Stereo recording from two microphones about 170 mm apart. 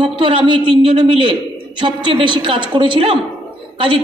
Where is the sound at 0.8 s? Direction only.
30° right (ahead or behind).